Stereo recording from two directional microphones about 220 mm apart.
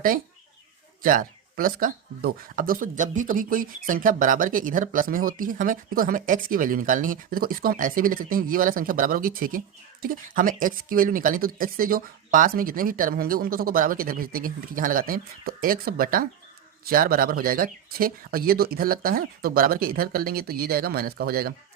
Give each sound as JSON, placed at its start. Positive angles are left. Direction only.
{"t": 1.0, "sound": "speech", "side_deg": -40}